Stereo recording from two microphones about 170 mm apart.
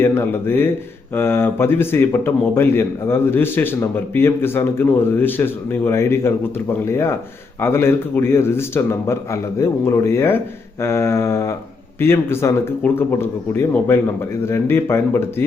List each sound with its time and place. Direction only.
0.0 s speech: 15° left (ahead or behind)